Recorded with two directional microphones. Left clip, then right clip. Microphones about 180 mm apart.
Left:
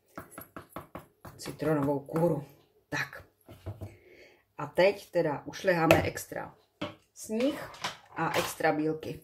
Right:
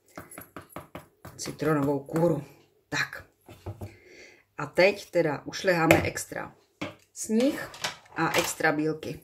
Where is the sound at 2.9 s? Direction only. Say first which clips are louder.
Right 4 dB; 15° right (ahead or behind).